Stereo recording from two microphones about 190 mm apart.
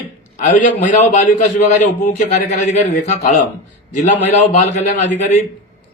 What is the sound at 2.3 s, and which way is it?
Speech, 40° left (ahead or behind).